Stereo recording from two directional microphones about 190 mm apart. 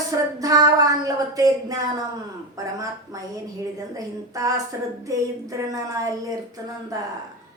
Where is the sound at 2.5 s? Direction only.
20° right (ahead or behind).